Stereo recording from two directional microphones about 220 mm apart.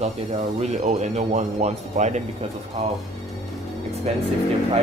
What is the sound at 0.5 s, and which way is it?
Speech, 30° right (ahead or behind).